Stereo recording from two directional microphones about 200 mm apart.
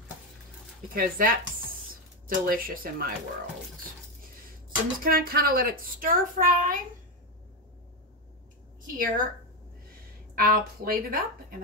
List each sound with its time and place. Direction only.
0.9 s a woman's voice: 45° right (ahead or behind)
5.0 s a woman's voice: 45° right (ahead or behind)
8.9 s a woman's voice: 45° right (ahead or behind)
10.3 s a woman's voice: 45° right (ahead or behind)